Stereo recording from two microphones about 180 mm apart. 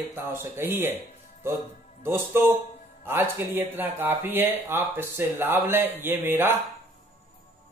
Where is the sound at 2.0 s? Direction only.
10° right (ahead or behind).